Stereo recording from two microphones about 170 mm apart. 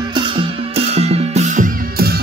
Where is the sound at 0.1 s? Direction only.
35° right (ahead or behind).